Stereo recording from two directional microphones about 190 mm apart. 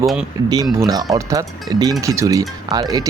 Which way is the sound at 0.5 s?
20° right (ahead or behind).